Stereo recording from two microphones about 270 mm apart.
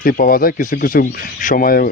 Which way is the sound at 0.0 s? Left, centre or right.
Left.